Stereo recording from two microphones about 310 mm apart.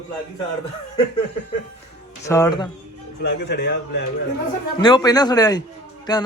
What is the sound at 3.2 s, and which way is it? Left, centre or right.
Speech, left.